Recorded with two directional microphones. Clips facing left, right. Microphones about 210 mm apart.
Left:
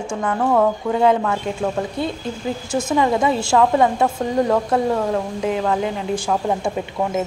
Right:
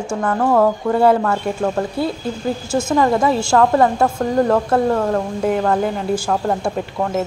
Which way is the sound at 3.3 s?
5° left (ahead or behind).